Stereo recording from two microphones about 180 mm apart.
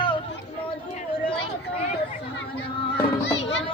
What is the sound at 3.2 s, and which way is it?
Music, 90° left.